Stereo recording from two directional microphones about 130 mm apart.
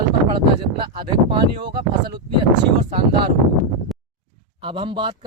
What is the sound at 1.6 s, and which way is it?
Speech, 35° right (ahead or behind).